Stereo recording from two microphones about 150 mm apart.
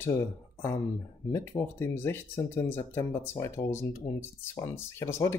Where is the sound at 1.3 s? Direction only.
15° left (ahead or behind).